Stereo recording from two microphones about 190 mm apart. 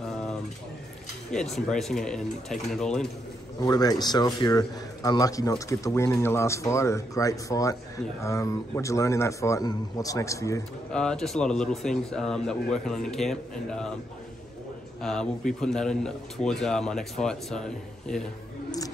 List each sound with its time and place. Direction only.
1.3 s a man's voice: 5° left (ahead or behind)
3.6 s a man's voice: 20° left (ahead or behind)
10.9 s a man's voice: 5° left (ahead or behind)
15.0 s a man's voice: centre (ahead or behind)